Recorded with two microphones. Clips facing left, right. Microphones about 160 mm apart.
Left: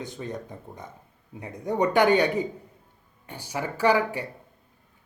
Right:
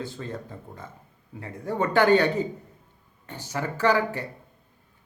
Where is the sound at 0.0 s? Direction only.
15° left (ahead or behind).